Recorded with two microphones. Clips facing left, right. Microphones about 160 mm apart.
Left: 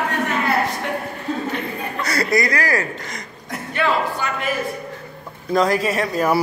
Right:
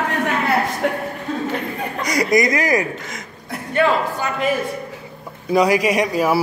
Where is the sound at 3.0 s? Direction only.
5° right (ahead or behind).